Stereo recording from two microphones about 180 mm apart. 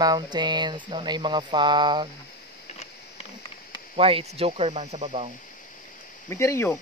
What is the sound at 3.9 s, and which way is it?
Speech, 35° right (ahead or behind).